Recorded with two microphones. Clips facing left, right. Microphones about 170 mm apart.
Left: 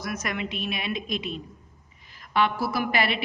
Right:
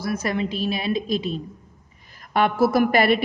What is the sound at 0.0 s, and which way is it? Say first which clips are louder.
A woman's voice: right 6 dB; 30° right (ahead or behind).